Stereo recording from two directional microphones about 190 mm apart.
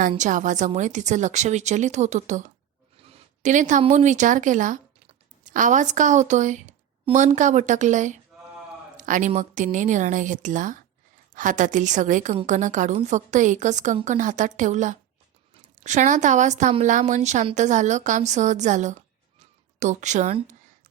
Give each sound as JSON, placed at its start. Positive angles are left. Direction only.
{"t": 0.2, "sound": "a woman's voice", "side_deg": -40}